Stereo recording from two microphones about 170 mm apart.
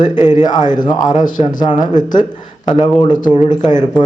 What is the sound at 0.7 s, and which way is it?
Speech, 25° left (ahead or behind).